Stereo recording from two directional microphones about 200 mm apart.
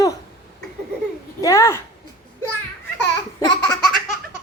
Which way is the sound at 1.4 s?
15° left (ahead or behind).